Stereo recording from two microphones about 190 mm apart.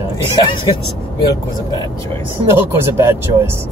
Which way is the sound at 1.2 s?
20° left (ahead or behind).